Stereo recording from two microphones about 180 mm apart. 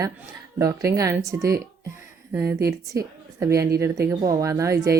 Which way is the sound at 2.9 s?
15° right (ahead or behind).